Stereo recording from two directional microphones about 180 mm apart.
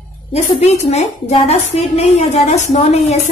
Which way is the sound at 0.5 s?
35° left (ahead or behind).